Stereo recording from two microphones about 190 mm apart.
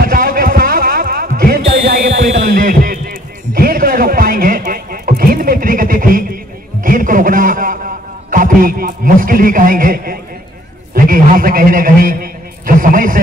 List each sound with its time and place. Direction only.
0.0 s music: 50° right (ahead or behind)
2.1 s a sound: 50° right (ahead or behind)
11.1 s a man's voice: 50° right (ahead or behind)